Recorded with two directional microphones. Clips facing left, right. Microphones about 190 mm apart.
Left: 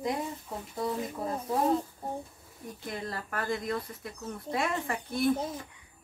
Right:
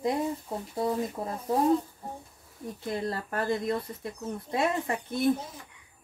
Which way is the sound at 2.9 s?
30° right (ahead or behind).